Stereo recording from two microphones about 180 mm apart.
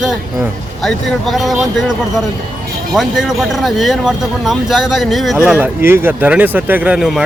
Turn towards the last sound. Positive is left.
turn(degrees=-5)  # may be behind; listen again after turning